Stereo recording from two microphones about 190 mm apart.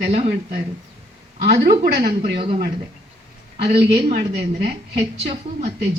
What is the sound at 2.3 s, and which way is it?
Speech, 25° right (ahead or behind).